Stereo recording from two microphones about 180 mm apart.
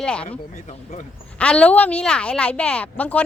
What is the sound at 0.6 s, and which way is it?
Speech, 40° left (ahead or behind).